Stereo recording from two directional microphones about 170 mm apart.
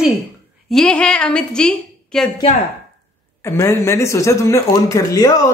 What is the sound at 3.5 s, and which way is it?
Speech, 15° left (ahead or behind).